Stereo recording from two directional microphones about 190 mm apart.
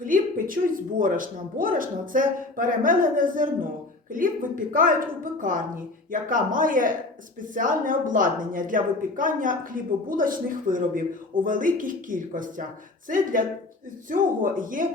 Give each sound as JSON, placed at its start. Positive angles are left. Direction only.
{"t": 0.0, "sound": "a woman's voice", "side_deg": -45}
{"t": 4.7, "sound": "a woman's voice", "side_deg": -45}